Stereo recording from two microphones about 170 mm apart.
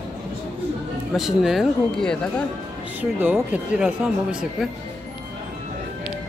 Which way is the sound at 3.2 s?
10° right (ahead or behind).